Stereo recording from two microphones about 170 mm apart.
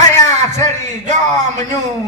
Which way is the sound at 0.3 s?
45° right (ahead or behind).